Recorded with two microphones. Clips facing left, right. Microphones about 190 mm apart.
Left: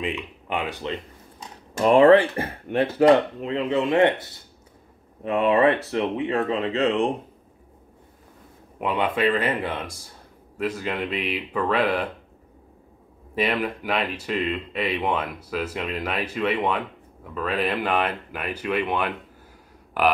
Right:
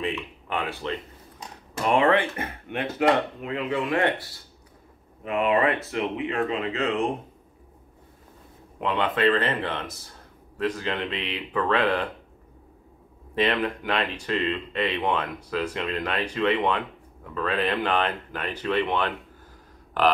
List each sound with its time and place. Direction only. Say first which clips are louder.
0.0 s speech: even; 15° left (ahead or behind)
1.9 s speech: left 7 dB; 35° left (ahead or behind)
8.7 s speech: left 1 dB; 10° left (ahead or behind)
13.3 s speech: even; 10° left (ahead or behind)